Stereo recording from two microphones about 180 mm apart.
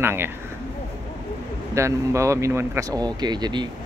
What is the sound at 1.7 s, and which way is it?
Speech, 15° right (ahead or behind).